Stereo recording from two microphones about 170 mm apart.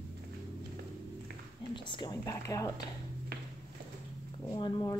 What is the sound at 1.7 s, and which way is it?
Speech, 25° left (ahead or behind).